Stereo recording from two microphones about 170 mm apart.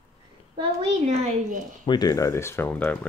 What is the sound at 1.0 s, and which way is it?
Speech, 45° right (ahead or behind).